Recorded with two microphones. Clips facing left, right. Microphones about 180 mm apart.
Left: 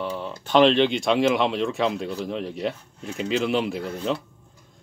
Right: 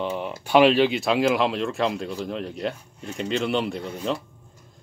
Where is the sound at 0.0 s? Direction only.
20° right (ahead or behind).